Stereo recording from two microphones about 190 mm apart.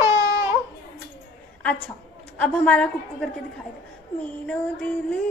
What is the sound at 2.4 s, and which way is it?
Speech, 5° left (ahead or behind).